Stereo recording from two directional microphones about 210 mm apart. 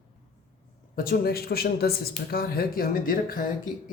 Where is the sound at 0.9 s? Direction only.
45° left (ahead or behind).